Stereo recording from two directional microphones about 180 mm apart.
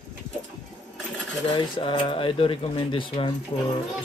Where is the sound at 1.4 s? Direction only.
25° left (ahead or behind).